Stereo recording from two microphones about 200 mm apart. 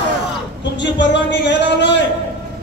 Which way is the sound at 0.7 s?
60° left (ahead or behind).